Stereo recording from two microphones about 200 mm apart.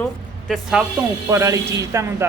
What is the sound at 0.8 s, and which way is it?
Speech, 10° right (ahead or behind).